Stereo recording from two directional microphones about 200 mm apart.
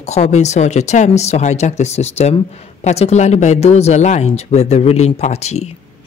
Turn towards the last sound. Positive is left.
turn(degrees=35)  # may be behind; listen again after turning